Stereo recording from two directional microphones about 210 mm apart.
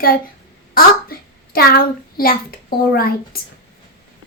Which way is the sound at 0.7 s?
45° left (ahead or behind).